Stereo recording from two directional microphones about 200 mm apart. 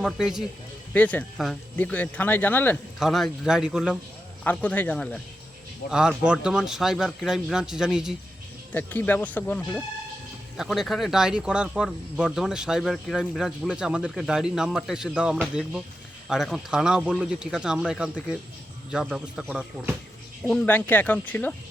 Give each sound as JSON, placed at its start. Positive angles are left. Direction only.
{"t": 0.0, "sound": "speech", "side_deg": 0}
{"t": 4.4, "sound": "speech", "side_deg": 10}
{"t": 8.7, "sound": "speech", "side_deg": 10}
{"t": 20.4, "sound": "speech", "side_deg": 5}